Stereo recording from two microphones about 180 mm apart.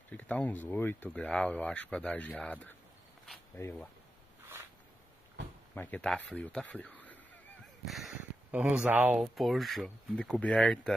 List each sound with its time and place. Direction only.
0.1 s speech: 10° left (ahead or behind)
5.8 s speech: 5° left (ahead or behind)